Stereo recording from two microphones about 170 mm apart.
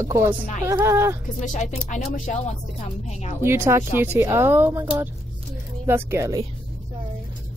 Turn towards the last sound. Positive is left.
turn(degrees=-15)  # may be behind; listen again after turning